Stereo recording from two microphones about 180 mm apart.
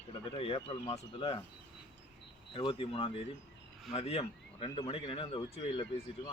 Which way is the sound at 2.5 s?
30° left (ahead or behind).